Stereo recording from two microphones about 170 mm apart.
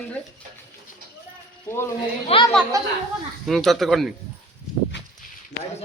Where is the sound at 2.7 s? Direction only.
20° right (ahead or behind).